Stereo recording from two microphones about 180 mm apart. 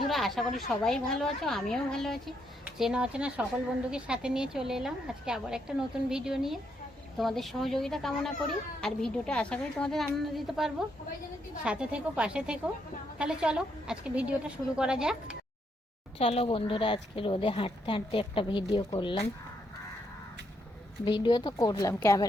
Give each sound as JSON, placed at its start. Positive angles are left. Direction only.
{"t": 0.1, "sound": "a woman's voice", "side_deg": 0}
{"t": 16.1, "sound": "speech", "side_deg": 30}
{"t": 21.0, "sound": "speech", "side_deg": 25}